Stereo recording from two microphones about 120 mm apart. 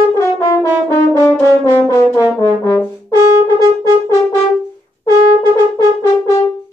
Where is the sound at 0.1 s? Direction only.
30° left (ahead or behind).